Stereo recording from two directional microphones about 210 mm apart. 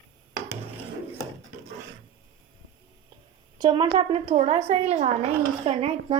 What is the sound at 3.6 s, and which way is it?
A woman's voice, 20° right (ahead or behind).